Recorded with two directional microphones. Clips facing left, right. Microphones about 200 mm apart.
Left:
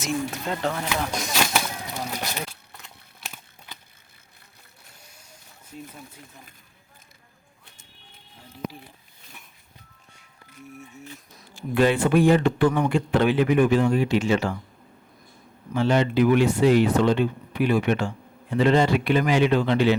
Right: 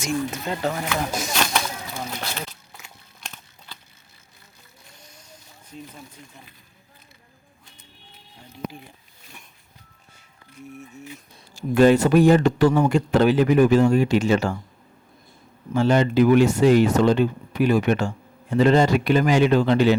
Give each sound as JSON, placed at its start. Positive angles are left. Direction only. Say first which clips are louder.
{"t": 0.0, "sound": "speech", "louder": "right 2 dB", "side_deg": 0}
{"t": 1.1, "sound": "a sound", "louder": "right 1 dB", "side_deg": 0}
{"t": 1.9, "sound": "speech", "louder": "even", "side_deg": 15}
{"t": 2.7, "sound": "crumpling", "louder": "right 1 dB", "side_deg": 0}
{"t": 4.9, "sound": "vehicle", "louder": "right 4 dB", "side_deg": 10}
{"t": 5.7, "sound": "speech", "louder": "even", "side_deg": 10}
{"t": 10.6, "sound": "speech", "louder": "right 3 dB", "side_deg": 0}
{"t": 11.5, "sound": "speech", "louder": "right 5 dB", "side_deg": -45}
{"t": 15.7, "sound": "speech", "louder": "right 3 dB", "side_deg": -45}